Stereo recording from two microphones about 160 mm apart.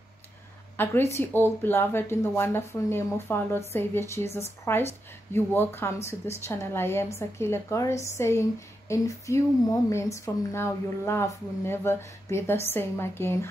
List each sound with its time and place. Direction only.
0.7 s a woman's voice: 15° left (ahead or behind)